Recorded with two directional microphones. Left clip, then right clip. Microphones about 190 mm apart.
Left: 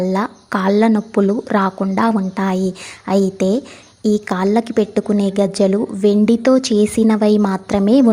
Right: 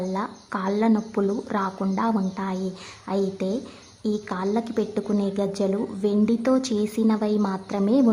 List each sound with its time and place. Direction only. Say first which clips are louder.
0.0 s a woman's voice: left 9 dB; 30° left (ahead or behind)